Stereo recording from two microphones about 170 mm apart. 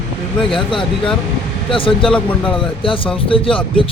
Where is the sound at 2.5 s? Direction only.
30° left (ahead or behind).